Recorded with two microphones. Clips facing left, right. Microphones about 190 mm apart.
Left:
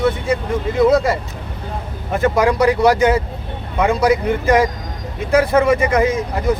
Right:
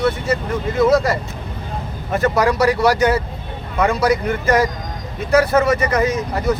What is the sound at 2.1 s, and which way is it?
Speech, 10° left (ahead or behind).